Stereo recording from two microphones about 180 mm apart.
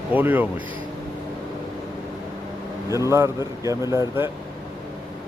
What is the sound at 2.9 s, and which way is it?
Speech, 15° right (ahead or behind).